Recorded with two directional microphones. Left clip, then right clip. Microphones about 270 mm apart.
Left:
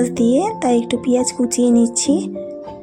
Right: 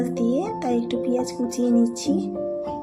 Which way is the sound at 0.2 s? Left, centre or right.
Left.